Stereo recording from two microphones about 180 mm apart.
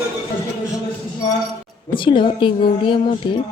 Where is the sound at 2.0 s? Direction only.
25° left (ahead or behind).